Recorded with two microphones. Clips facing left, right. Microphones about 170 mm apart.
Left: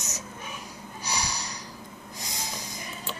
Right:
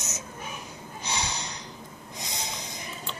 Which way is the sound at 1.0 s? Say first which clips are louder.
Even; 20° right (ahead or behind).